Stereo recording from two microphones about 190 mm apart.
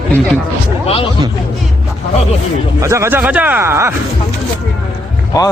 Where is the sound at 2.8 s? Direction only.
15° right (ahead or behind).